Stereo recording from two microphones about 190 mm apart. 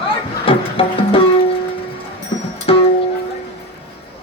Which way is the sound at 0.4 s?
30° left (ahead or behind).